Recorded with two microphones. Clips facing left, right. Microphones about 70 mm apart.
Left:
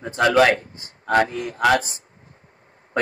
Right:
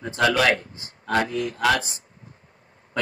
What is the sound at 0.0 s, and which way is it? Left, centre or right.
A man's voice, left.